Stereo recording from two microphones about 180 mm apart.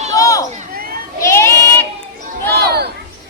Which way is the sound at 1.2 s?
15° left (ahead or behind).